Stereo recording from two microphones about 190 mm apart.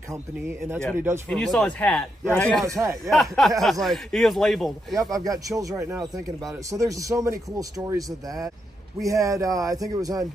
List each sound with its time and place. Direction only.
0.1 s speech: 10° right (ahead or behind)
1.3 s a man's voice: 5° left (ahead or behind)
2.6 s speech: 15° right (ahead or behind)
3.1 s speech: centre (ahead or behind)
5.1 s speech: 20° right (ahead or behind)